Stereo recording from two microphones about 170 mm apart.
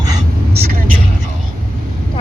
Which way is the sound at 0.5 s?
65° right (ahead or behind).